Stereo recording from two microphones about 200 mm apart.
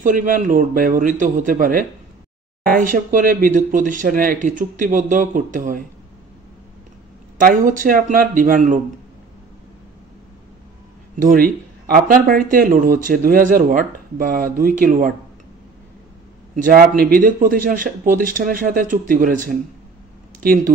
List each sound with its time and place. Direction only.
0.0 s speech: 40° right (ahead or behind)
7.3 s speech: 40° right (ahead or behind)
11.1 s speech: 45° right (ahead or behind)
16.5 s speech: 45° right (ahead or behind)